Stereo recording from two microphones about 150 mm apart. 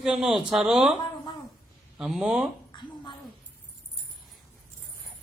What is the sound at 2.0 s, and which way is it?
Speech, 5° right (ahead or behind).